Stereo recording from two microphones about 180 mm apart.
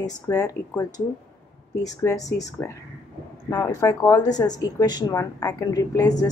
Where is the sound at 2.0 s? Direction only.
20° left (ahead or behind).